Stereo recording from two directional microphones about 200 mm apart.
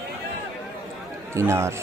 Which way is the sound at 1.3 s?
15° right (ahead or behind).